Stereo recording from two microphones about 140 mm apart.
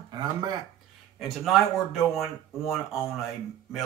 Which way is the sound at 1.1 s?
Centre (ahead or behind).